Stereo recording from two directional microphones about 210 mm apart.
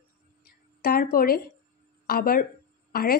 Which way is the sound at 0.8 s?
40° left (ahead or behind).